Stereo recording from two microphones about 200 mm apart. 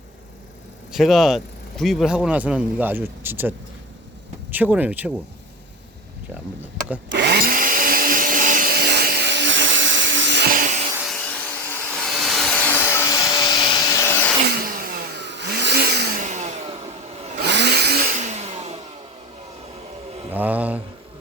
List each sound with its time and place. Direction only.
0.9 s a man's voice: centre (ahead or behind)
4.5 s speech: 10° right (ahead or behind)
7.1 s vacuum cleaner: 55° right (ahead or behind); by 10.8 s 40° right (ahead or behind)
10.9 s vacuum cleaner: 5° right (ahead or behind)
11.3 s vacuum cleaner: 5° left (ahead or behind)
14.4 s vehicle: 50° right (ahead or behind)
16.2 s a sound: 35° right (ahead or behind)
17.4 s a sound: 55° right (ahead or behind); by 18.8 s 30° right (ahead or behind)
20.3 s a sound: 10° right (ahead or behind)